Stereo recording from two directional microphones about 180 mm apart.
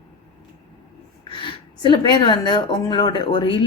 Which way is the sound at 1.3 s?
30° left (ahead or behind).